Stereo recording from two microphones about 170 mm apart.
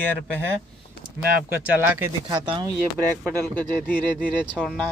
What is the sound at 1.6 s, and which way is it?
Speech, 10° right (ahead or behind).